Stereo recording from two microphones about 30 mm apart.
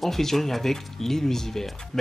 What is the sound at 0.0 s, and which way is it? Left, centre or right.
A man's voice, centre.